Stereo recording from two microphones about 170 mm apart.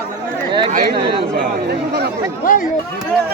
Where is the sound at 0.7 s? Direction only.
50° right (ahead or behind).